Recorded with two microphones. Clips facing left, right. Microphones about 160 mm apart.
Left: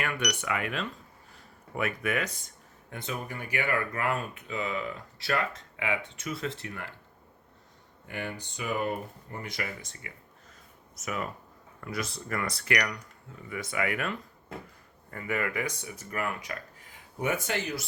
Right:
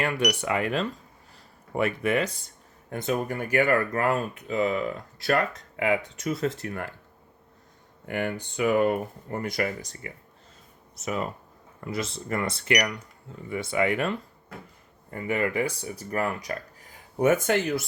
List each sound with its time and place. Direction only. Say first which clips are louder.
0.3 s speech: right 6 dB; 30° right (ahead or behind)
2.9 s speech: right 9 dB; 45° right (ahead or behind)
8.0 s speech: right 8 dB; 55° right (ahead or behind); by 10.1 s 40° right (ahead or behind)
10.9 s speech: right 4 dB; 25° right (ahead or behind); by 17.8 s 50° right (ahead or behind)